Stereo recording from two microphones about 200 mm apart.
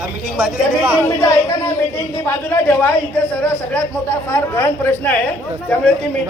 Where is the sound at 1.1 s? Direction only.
15° left (ahead or behind).